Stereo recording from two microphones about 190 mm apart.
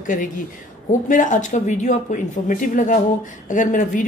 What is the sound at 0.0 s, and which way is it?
A woman's voice, 45° left (ahead or behind).